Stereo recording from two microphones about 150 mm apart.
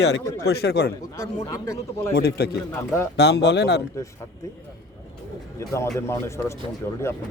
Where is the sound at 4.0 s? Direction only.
20° left (ahead or behind).